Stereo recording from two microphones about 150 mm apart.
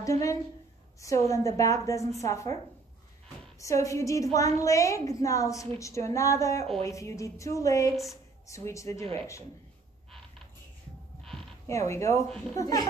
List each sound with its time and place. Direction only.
0.0 s a woman's voice: 20° left (ahead or behind)
3.5 s a woman's voice: 20° left (ahead or behind)
11.6 s a woman's voice: 20° left (ahead or behind)